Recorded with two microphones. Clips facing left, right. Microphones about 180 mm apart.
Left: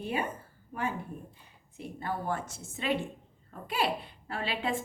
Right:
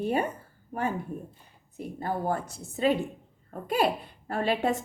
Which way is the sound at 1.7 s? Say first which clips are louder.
Right 4 dB; 40° right (ahead or behind).